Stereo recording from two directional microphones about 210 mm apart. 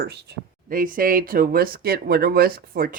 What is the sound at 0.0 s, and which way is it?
Speech, 50° right (ahead or behind).